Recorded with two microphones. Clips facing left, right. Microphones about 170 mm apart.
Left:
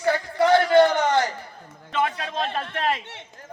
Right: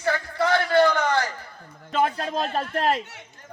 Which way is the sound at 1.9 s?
40° right (ahead or behind).